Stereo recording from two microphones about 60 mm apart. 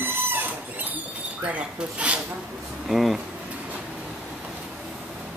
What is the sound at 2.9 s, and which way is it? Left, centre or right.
Speech, centre.